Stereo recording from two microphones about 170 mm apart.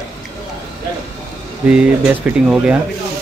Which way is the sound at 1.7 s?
5° right (ahead or behind).